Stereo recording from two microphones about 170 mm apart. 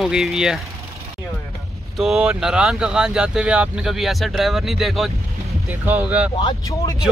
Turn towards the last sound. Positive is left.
turn(degrees=25)  # may be behind; listen again after turning